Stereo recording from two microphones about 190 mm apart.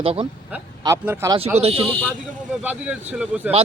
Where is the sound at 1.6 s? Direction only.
30° right (ahead or behind).